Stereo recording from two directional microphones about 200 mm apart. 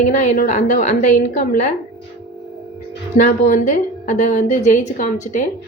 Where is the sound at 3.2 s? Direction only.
40° left (ahead or behind).